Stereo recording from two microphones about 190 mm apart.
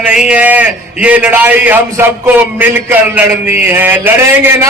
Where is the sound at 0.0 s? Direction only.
5° right (ahead or behind).